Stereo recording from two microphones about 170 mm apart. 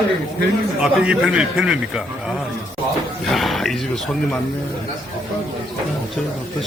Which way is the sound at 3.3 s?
Centre (ahead or behind).